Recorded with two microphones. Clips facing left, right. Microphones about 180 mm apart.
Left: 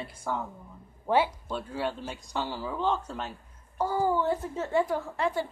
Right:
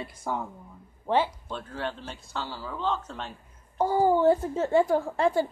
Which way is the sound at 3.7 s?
20° right (ahead or behind).